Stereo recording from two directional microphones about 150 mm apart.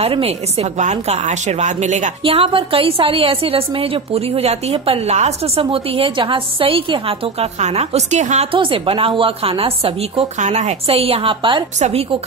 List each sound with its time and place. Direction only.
0.0 s a woman's voice: 40° right (ahead or behind)
2.2 s a woman's voice: 35° right (ahead or behind)
8.5 s a woman's voice: 35° right (ahead or behind)